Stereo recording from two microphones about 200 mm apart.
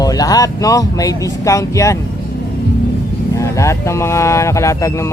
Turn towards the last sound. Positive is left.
turn(degrees=15)  # may be behind; listen again after turning